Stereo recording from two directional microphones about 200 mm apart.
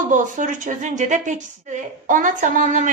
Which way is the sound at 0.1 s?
40° right (ahead or behind).